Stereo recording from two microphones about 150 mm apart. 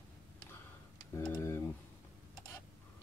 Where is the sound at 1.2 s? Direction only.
15° left (ahead or behind).